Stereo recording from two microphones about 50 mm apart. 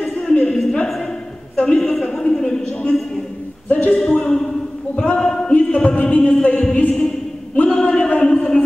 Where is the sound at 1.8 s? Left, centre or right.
Centre.